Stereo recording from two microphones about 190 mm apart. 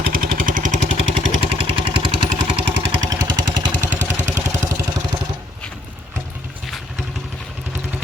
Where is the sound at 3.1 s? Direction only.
20° right (ahead or behind).